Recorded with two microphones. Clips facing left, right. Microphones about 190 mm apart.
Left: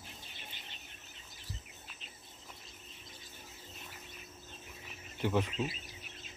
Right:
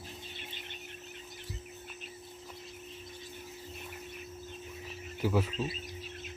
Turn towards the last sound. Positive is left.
turn(degrees=-5)  # may be behind; listen again after turning